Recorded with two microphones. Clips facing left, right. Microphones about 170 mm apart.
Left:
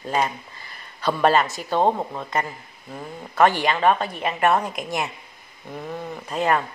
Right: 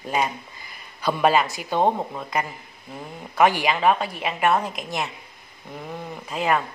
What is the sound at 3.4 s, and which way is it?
Speech, 10° right (ahead or behind).